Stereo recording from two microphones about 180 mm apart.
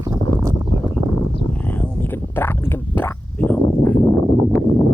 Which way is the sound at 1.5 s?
10° left (ahead or behind).